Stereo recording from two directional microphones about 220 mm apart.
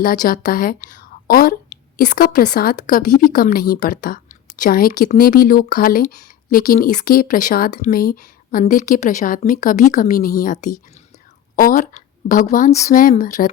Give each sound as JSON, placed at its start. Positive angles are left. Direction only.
{"t": 0.0, "sound": "a woman's voice", "side_deg": 40}